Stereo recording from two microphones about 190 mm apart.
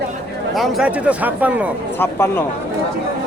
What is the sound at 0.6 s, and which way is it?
Speech, 5° right (ahead or behind).